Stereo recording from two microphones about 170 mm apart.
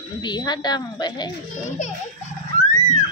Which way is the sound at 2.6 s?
45° left (ahead or behind).